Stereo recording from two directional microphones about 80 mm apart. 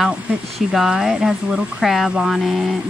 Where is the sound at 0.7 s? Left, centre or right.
Centre.